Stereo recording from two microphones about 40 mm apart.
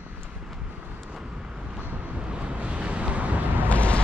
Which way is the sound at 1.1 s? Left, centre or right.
Centre.